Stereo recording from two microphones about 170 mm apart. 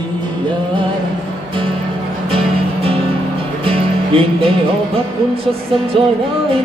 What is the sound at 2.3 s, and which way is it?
Music, 35° right (ahead or behind).